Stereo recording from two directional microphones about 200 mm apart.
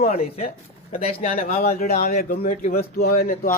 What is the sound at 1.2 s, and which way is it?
Speech, 45° left (ahead or behind).